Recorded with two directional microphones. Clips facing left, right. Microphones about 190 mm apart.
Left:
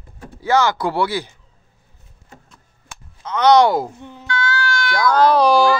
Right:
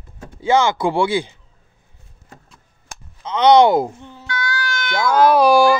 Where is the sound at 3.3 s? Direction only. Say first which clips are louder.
Right 1 dB; 25° right (ahead or behind).